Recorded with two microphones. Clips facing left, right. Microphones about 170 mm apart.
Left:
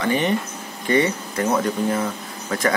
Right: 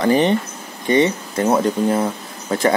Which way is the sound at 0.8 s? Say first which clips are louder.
Right 3 dB; 25° right (ahead or behind).